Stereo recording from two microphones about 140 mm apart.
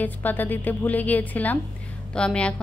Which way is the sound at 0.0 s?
15° left (ahead or behind).